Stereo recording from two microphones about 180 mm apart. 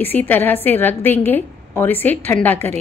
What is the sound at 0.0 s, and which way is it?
Speech, 10° left (ahead or behind).